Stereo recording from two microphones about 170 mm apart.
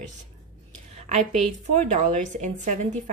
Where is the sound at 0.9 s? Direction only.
45° right (ahead or behind).